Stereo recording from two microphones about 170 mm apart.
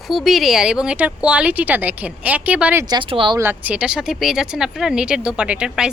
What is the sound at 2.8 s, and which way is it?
Speech, 25° right (ahead or behind).